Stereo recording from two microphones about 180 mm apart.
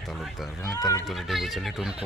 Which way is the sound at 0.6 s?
20° left (ahead or behind).